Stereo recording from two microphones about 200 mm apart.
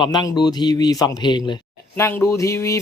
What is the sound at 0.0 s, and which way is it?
A man's voice, 20° left (ahead or behind).